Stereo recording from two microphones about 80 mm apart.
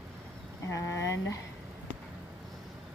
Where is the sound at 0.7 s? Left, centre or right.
Left.